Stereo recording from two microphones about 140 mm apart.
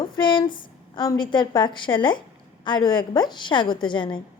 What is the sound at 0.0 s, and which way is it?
A woman's voice, 35° left (ahead or behind).